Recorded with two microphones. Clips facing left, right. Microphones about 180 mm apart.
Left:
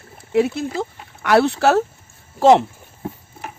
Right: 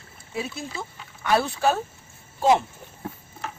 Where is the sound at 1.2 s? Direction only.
75° left (ahead or behind).